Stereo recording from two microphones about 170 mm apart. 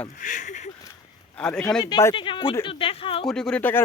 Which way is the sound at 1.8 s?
20° left (ahead or behind).